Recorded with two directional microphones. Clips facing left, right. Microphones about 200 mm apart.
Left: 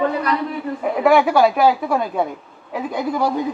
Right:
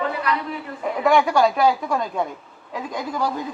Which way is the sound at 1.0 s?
5° left (ahead or behind).